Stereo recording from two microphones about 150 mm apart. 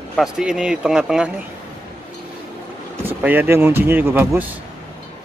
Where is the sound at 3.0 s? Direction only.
10° right (ahead or behind).